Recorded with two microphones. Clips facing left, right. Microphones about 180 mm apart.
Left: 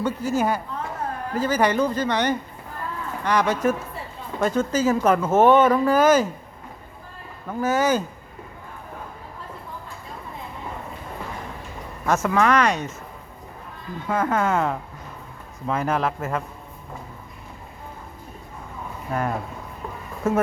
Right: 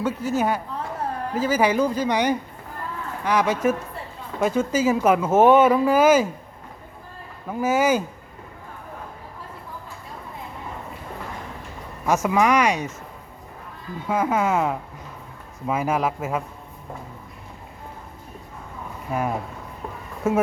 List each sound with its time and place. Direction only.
0.0 s a woman's voice: centre (ahead or behind)
7.4 s speech: 10° right (ahead or behind)
12.0 s speech: 10° right (ahead or behind)
14.1 s speech: 10° right (ahead or behind)
19.1 s speech: 10° right (ahead or behind)